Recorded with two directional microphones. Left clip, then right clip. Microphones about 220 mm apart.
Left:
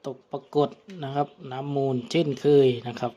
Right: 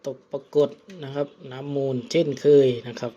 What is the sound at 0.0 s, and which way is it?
Speech, 20° left (ahead or behind).